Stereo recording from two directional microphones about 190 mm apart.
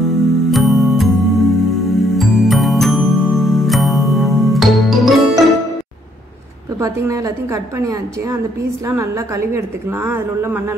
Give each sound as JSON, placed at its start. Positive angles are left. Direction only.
{"t": 0.0, "sound": "music", "side_deg": 0}
{"t": 6.8, "sound": "a woman's voice", "side_deg": -15}